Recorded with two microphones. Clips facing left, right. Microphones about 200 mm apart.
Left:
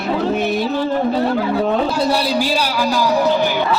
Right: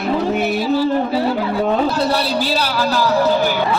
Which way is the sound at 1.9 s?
10° left (ahead or behind).